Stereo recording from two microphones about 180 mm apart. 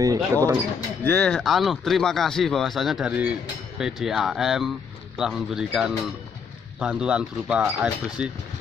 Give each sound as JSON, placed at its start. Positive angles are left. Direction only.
{"t": 0.0, "sound": "speech", "side_deg": -20}
{"t": 1.0, "sound": "speech", "side_deg": 5}